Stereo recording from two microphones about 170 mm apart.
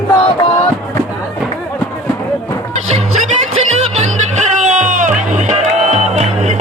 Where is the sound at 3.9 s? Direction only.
45° right (ahead or behind).